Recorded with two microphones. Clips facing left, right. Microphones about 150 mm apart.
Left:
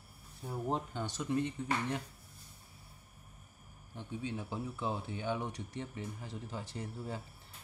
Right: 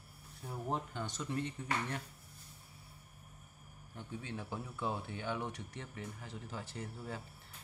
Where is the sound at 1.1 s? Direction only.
15° left (ahead or behind).